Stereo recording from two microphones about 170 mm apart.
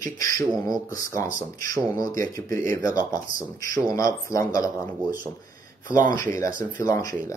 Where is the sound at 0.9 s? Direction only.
15° left (ahead or behind).